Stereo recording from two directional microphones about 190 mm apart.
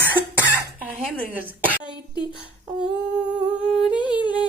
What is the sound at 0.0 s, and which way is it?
Cough, 10° right (ahead or behind).